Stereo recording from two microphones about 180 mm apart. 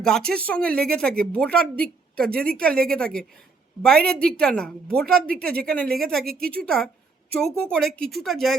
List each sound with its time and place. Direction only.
0.0 s a woman's voice: 5° left (ahead or behind)